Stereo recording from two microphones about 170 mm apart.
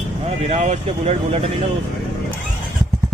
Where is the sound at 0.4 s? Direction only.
45° right (ahead or behind).